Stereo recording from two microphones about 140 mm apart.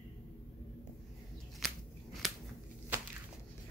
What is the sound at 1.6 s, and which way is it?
Scissors, centre (ahead or behind).